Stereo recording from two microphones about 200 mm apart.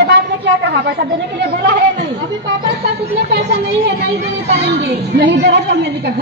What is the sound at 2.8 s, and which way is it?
A woman's voice, 60° right (ahead or behind).